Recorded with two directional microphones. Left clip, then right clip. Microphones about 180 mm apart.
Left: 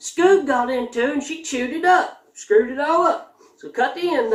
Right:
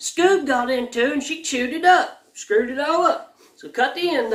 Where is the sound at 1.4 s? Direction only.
20° right (ahead or behind).